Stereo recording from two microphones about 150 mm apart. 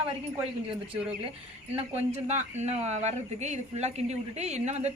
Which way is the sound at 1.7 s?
45° right (ahead or behind).